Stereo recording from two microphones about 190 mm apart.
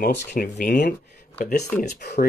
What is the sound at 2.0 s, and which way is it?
Speech, 60° left (ahead or behind).